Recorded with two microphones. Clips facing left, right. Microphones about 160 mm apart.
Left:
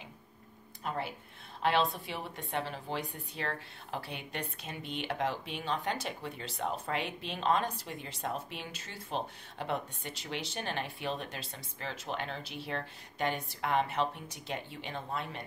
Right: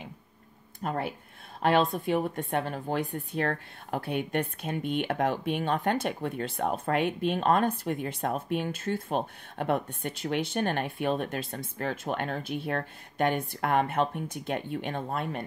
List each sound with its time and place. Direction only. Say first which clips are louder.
0.7 s a woman's voice: right 5 dB; 50° right (ahead or behind)